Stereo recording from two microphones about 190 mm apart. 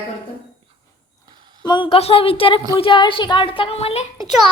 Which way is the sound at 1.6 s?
25° left (ahead or behind).